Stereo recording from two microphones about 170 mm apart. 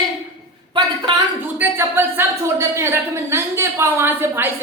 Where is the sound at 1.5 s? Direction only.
10° right (ahead or behind).